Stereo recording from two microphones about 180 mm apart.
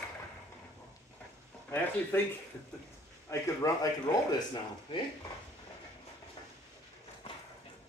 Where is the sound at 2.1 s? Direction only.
10° left (ahead or behind).